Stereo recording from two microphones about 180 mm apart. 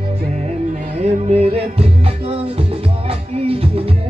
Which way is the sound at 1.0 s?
35° right (ahead or behind).